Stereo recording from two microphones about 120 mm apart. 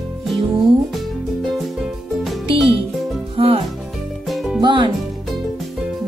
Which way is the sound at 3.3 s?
55° right (ahead or behind).